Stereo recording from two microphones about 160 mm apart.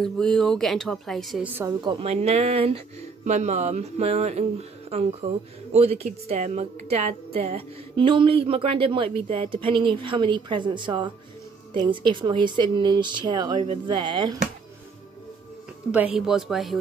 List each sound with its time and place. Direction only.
0.0 s a woman's voice: centre (ahead or behind)
1.8 s a woman's voice: 30° right (ahead or behind)
16.2 s a woman's voice: 5° right (ahead or behind)